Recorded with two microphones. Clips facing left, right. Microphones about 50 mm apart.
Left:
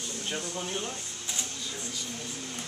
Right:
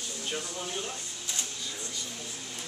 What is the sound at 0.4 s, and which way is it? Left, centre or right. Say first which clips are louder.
Speech: left 2 dB; left.